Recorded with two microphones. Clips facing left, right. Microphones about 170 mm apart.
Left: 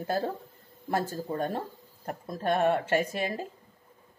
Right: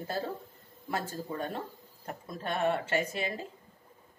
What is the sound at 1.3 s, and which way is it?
Speech, 45° left (ahead or behind).